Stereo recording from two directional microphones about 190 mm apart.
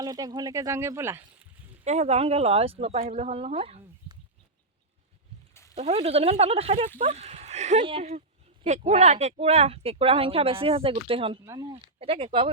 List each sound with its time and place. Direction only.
0.0 s speech: 20° right (ahead or behind)
1.8 s speech: 35° right (ahead or behind)
5.7 s speech: 30° right (ahead or behind)
11.4 s speech: 15° right (ahead or behind)
11.9 s speech: 30° right (ahead or behind)